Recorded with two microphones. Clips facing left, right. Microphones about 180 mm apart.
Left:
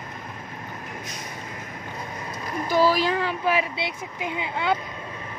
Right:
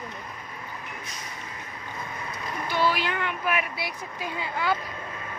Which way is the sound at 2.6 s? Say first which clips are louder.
Left 6 dB; 40° left (ahead or behind).